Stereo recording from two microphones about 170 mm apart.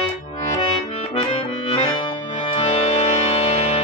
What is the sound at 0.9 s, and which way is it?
Accordion, 35° left (ahead or behind).